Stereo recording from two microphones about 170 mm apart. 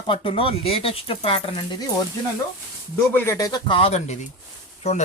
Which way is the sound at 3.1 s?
10° left (ahead or behind).